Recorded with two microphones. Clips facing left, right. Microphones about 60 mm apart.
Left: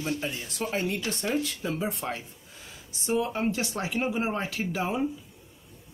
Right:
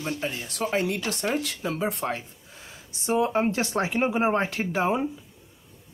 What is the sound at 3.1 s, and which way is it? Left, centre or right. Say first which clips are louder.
Speech: right 4 dB; right.